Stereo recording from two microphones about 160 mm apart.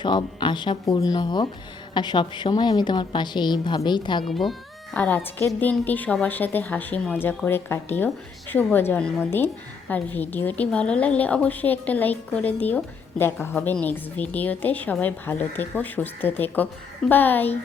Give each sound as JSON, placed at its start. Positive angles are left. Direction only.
{"t": 0.0, "sound": "a woman's voice", "side_deg": 30}
{"t": 4.2, "sound": "a woman's voice", "side_deg": 0}